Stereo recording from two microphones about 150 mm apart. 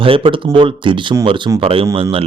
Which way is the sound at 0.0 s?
35° right (ahead or behind).